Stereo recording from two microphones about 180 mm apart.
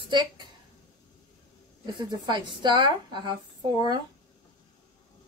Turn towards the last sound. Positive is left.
turn(degrees=-25)  # may be behind; listen again after turning